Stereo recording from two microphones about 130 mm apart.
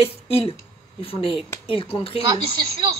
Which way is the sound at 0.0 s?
45° left (ahead or behind).